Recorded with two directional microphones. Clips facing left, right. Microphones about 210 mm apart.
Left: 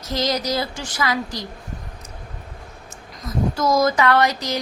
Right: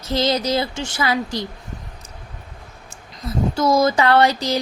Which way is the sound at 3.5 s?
30° right (ahead or behind).